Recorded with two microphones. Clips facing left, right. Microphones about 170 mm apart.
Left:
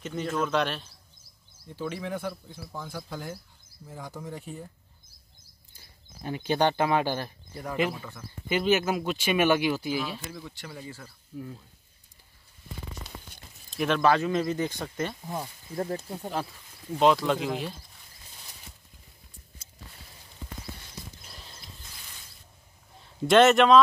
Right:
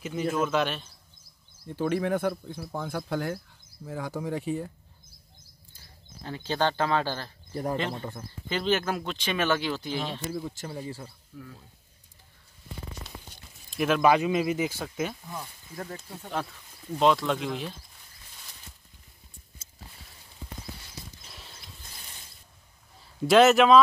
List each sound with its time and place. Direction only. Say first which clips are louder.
0.0 s speech: right 2 dB; 10° right (ahead or behind)
1.8 s speech: right 7 dB; 55° right (ahead or behind); by 4.7 s 75° right (ahead or behind)
6.2 s speech: left 3 dB; 15° left (ahead or behind)
7.9 s speech: right 4 dB; 30° right (ahead or behind)
8.5 s speech: left 2 dB; 10° left (ahead or behind)
10.3 s speech: right 6 dB; 40° right (ahead or behind)
13.7 s speech: right 1 dB; centre (ahead or behind)
15.2 s speech: left 5 dB; 30° left (ahead or behind)
16.3 s speech: right 1 dB; centre (ahead or behind)
21.3 s mechanisms: even; centre (ahead or behind)
22.9 s a man's voice: even; centre (ahead or behind)